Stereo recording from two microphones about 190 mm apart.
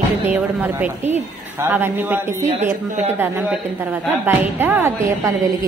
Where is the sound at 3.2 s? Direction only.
10° right (ahead or behind).